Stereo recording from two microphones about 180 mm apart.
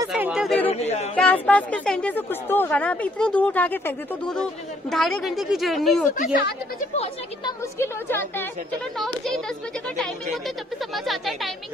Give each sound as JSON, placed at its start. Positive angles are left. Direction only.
{"t": 0.1, "sound": "chatter", "side_deg": -5}
{"t": 0.7, "sound": "a sound", "side_deg": 35}
{"t": 1.1, "sound": "a woman's voice", "side_deg": 10}
{"t": 6.1, "sound": "speech", "side_deg": 50}
{"t": 7.4, "sound": "a woman's voice", "side_deg": 15}
{"t": 8.9, "sound": "a woman's voice", "side_deg": 0}
{"t": 11.1, "sound": "a woman's voice", "side_deg": 0}